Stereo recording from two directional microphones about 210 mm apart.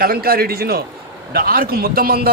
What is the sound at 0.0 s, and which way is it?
A man's voice, 45° right (ahead or behind).